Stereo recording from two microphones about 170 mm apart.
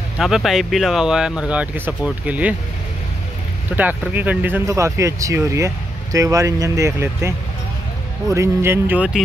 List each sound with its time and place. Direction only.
0.2 s speech: centre (ahead or behind)
3.7 s speech: 10° right (ahead or behind)